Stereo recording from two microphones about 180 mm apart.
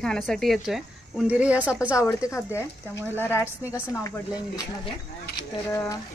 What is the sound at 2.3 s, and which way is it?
Speech, 15° left (ahead or behind).